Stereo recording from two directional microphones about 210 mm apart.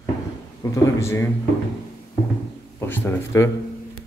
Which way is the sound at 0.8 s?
15° left (ahead or behind).